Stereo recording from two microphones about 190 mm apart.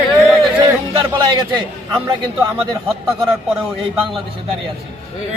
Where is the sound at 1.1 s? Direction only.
25° right (ahead or behind).